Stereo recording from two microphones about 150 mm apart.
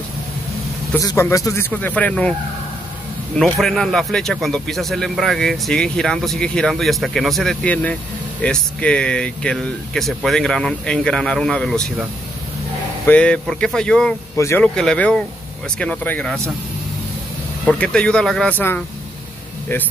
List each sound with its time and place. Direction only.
0.9 s speech: 20° left (ahead or behind)
3.4 s speech: centre (ahead or behind)
13.0 s speech: 10° left (ahead or behind)
14.3 s speech: 20° left (ahead or behind)
14.6 s speech: 5° left (ahead or behind)
17.6 s speech: 5° left (ahead or behind)